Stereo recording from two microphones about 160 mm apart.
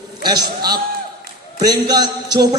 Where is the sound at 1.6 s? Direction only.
25° right (ahead or behind).